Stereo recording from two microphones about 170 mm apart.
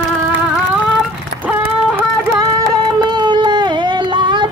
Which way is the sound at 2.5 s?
20° right (ahead or behind).